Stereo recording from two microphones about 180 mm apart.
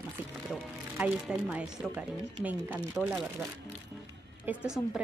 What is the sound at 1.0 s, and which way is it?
Speech, 5° right (ahead or behind).